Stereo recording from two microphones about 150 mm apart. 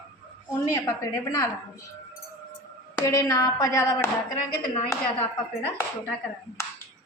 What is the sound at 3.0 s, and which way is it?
A woman's voice, 20° left (ahead or behind).